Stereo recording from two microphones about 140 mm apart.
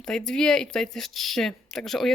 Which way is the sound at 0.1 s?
5° left (ahead or behind).